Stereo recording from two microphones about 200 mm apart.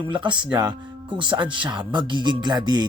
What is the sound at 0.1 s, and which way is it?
Speech, 25° right (ahead or behind).